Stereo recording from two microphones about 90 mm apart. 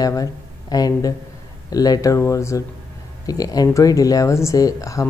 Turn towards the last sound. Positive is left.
turn(degrees=40)  # may be behind; listen again after turning